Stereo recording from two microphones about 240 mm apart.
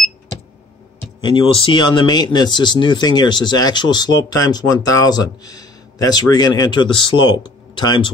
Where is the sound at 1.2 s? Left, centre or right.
Left.